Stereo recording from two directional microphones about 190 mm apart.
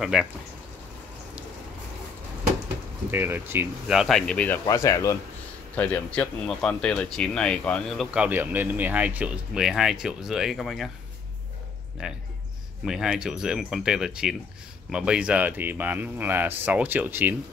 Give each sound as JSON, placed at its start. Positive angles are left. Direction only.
{"t": 0.0, "sound": "speech", "side_deg": 0}
{"t": 3.1, "sound": "speech", "side_deg": -10}
{"t": 4.6, "sound": "speech", "side_deg": 15}
{"t": 12.0, "sound": "speech", "side_deg": -5}